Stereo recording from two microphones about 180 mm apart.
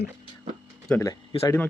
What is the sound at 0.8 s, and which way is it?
Speech, 10° left (ahead or behind).